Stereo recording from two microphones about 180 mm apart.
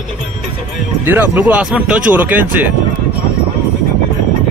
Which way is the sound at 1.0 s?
10° right (ahead or behind).